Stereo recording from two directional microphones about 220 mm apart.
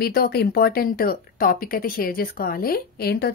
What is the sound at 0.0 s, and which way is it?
Speech, 45° left (ahead or behind).